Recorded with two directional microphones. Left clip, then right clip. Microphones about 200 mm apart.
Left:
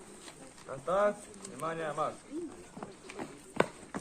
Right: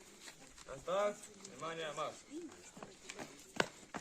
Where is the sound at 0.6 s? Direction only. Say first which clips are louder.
Left 7 dB; 20° right (ahead or behind).